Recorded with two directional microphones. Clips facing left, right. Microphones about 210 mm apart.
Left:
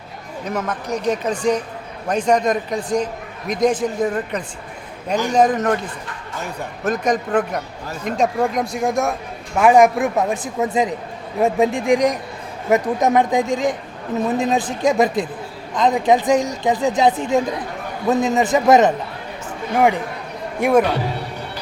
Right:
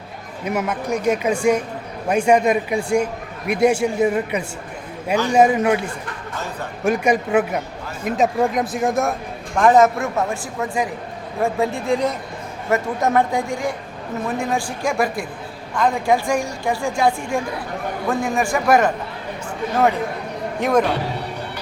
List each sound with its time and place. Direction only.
0.4 s a man's voice: 10° right (ahead or behind)
9.6 s a man's voice: 10° left (ahead or behind)
20.6 s speech: 10° left (ahead or behind)